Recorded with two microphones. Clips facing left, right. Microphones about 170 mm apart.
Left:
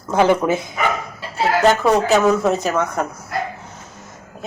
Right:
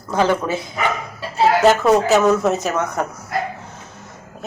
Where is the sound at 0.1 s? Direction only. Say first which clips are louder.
Left 3 dB; 15° left (ahead or behind).